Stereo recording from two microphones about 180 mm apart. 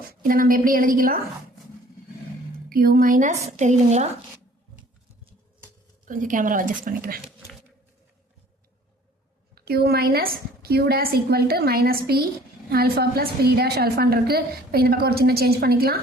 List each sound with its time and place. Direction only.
0.2 s a woman's voice: 50° right (ahead or behind)
2.6 s a woman's voice: 50° right (ahead or behind)
6.1 s a woman's voice: 45° right (ahead or behind)
9.6 s a woman's voice: 60° right (ahead or behind)